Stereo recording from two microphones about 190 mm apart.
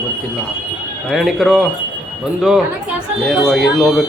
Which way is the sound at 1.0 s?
Centre (ahead or behind).